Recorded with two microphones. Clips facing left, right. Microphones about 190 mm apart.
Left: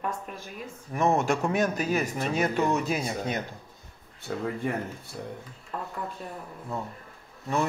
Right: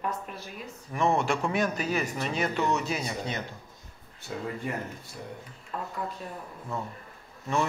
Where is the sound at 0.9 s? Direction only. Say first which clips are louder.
Left 2 dB; 45° left (ahead or behind).